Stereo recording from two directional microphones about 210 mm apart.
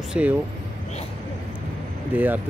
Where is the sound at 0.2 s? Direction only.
5° right (ahead or behind).